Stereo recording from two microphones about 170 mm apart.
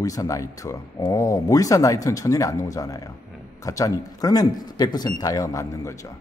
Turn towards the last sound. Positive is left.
turn(degrees=20)  # may be behind; listen again after turning